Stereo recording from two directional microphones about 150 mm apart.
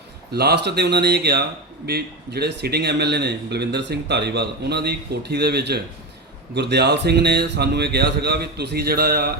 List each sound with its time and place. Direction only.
0.3 s speech: 90° right